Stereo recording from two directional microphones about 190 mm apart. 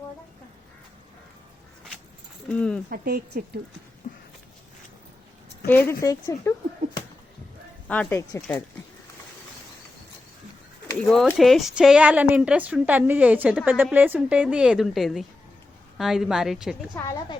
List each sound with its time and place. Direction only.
2.5 s a woman's voice: 5° left (ahead or behind)
2.9 s speech: 50° right (ahead or behind)
4.0 s a sound: 40° left (ahead or behind)
5.6 s speech: 10° left (ahead or behind)
7.9 s speech: 10° left (ahead or behind)
11.0 s a woman's voice: 5° left (ahead or behind)
16.9 s speech: 10° left (ahead or behind)